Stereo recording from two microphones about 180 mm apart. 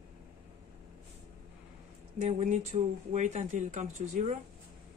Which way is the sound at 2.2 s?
40° right (ahead or behind).